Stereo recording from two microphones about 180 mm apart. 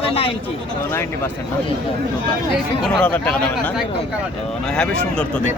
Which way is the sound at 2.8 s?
5° left (ahead or behind).